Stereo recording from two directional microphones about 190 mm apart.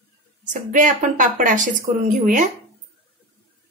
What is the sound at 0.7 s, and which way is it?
Speech, 40° right (ahead or behind).